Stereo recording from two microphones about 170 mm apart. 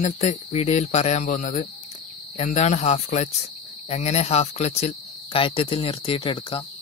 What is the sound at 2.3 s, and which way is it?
Cricket, 40° left (ahead or behind).